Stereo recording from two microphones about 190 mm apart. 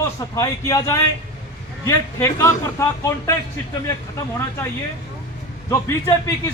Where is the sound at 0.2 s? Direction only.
15° left (ahead or behind).